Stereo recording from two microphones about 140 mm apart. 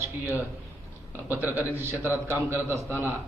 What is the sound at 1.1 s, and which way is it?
A man's voice, 15° right (ahead or behind).